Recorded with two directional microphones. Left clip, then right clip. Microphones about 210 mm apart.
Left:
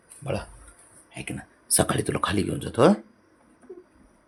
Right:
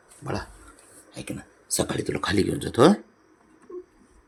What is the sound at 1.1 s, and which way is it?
Speech, 15° left (ahead or behind).